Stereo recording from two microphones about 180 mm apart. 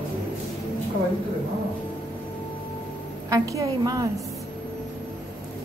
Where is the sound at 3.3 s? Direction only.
20° right (ahead or behind).